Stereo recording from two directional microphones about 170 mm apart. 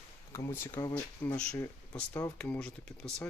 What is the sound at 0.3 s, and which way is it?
Speech, 15° left (ahead or behind).